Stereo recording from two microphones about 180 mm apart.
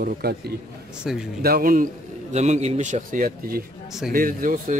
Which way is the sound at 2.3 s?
40° right (ahead or behind).